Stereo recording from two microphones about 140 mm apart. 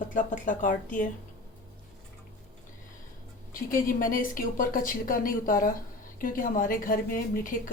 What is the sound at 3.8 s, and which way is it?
A woman's voice, 75° left (ahead or behind).